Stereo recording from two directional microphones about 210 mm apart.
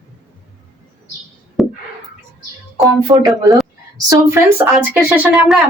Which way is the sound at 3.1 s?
15° right (ahead or behind).